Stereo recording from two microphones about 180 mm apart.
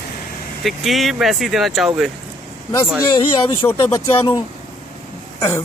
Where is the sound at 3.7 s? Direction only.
15° left (ahead or behind).